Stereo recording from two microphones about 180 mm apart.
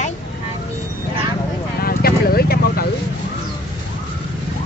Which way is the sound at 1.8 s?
55° left (ahead or behind).